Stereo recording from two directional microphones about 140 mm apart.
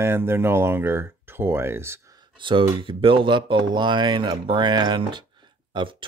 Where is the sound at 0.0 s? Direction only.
15° right (ahead or behind).